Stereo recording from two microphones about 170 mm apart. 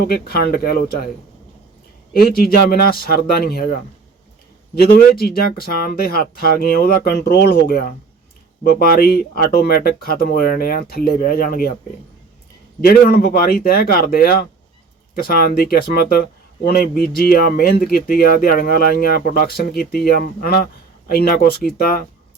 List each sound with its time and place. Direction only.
0.0 s speech: 65° left (ahead or behind)
2.1 s speech: 60° left (ahead or behind)
12.8 s speech: 65° left (ahead or behind)